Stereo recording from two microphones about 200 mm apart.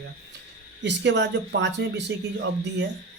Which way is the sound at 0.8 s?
60° right (ahead or behind).